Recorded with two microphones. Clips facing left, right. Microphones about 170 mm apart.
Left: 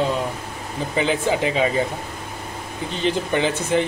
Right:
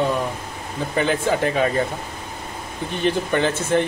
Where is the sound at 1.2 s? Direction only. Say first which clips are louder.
Even; 15° left (ahead or behind).